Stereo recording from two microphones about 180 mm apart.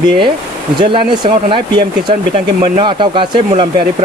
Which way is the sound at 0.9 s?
30° right (ahead or behind).